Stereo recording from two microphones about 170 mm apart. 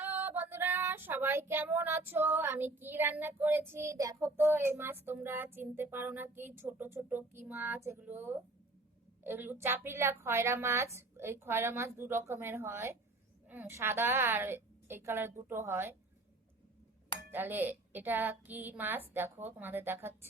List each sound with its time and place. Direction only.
0.0 s female singing: 10° right (ahead or behind)
17.3 s female singing: 10° right (ahead or behind)